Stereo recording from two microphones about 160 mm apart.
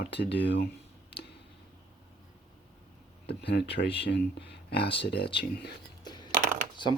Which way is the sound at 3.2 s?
90° left.